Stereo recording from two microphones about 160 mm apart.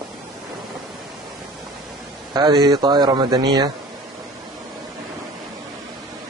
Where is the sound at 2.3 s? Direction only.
25° right (ahead or behind).